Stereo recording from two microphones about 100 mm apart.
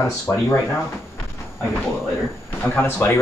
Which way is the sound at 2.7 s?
20° left (ahead or behind).